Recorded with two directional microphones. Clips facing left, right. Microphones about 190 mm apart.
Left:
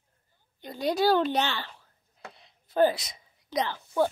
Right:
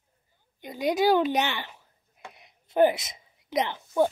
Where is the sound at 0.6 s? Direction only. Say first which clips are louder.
Right 1 dB; 15° right (ahead or behind).